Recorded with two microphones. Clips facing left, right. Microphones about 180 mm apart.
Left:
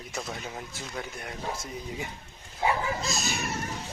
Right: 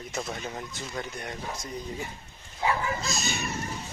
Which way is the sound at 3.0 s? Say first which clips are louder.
Even; centre (ahead or behind).